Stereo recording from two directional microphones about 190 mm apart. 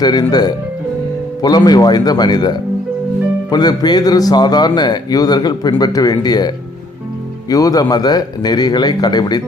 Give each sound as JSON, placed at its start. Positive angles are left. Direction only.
{"t": 0.0, "sound": "a man's voice", "side_deg": 20}
{"t": 7.5, "sound": "a man's voice", "side_deg": 20}